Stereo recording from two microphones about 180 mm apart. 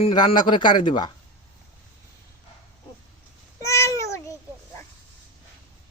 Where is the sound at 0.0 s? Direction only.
25° left (ahead or behind).